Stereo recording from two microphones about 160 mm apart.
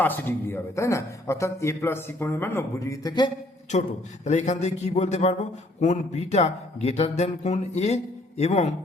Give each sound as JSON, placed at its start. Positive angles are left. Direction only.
{"t": 0.0, "sound": "a man's voice", "side_deg": 10}
{"t": 3.7, "sound": "a man's voice", "side_deg": 45}